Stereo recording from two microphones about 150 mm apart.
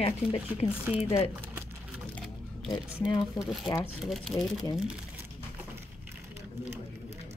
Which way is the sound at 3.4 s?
Centre (ahead or behind).